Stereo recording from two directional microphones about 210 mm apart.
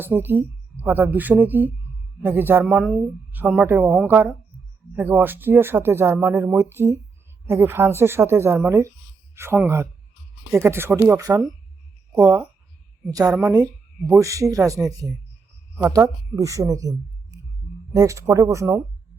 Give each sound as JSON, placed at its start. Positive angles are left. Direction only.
{"t": 0.0, "sound": "speech", "side_deg": -10}
{"t": 17.9, "sound": "speech", "side_deg": -15}